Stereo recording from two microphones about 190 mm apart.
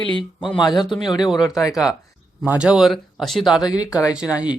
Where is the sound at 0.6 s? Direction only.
20° left (ahead or behind).